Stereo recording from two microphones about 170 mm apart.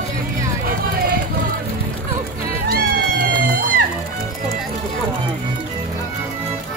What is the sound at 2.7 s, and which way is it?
Music, 60° right (ahead or behind).